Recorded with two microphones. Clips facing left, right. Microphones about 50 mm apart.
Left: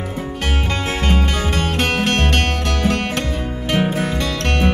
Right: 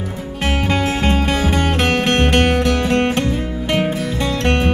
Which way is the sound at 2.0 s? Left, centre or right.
Centre.